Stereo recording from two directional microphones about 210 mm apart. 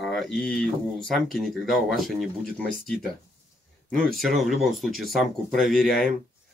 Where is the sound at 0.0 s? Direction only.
Centre (ahead or behind).